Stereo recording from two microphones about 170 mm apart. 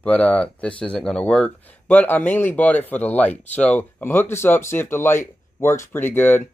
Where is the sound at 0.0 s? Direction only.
10° left (ahead or behind).